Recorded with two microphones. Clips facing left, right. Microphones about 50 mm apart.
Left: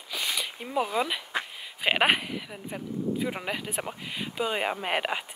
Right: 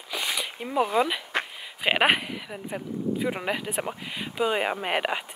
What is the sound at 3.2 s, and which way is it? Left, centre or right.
Speech, centre.